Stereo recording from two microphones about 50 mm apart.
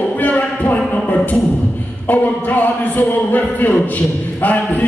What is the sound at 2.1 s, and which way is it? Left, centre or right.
A man's voice, left.